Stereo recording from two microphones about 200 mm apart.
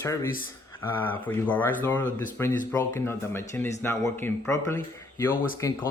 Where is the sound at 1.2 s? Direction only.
10° left (ahead or behind).